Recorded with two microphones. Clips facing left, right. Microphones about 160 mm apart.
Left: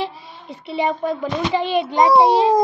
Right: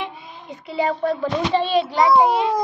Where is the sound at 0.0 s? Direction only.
35° left (ahead or behind).